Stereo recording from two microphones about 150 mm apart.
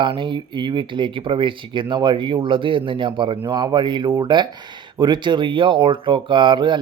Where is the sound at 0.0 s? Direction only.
30° right (ahead or behind).